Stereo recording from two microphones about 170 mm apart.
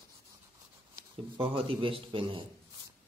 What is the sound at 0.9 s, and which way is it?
Speech, 30° right (ahead or behind).